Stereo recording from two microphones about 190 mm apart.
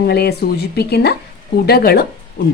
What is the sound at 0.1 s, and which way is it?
A woman's voice, 60° left (ahead or behind).